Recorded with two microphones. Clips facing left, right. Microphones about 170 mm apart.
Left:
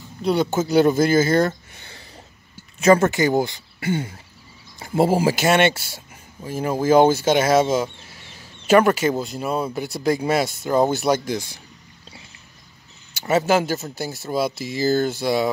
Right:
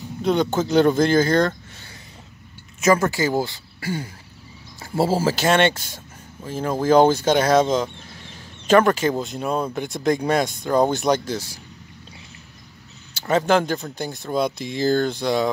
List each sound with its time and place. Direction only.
0.2 s speech: 5° left (ahead or behind)
2.8 s speech: 25° left (ahead or behind); by 11.4 s 10° left (ahead or behind)
13.1 s speech: 10° left (ahead or behind)